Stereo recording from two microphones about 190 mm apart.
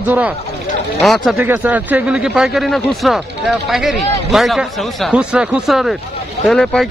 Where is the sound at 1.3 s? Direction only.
10° right (ahead or behind).